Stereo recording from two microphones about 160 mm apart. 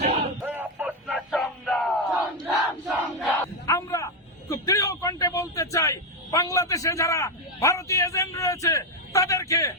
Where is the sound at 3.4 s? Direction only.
20° left (ahead or behind).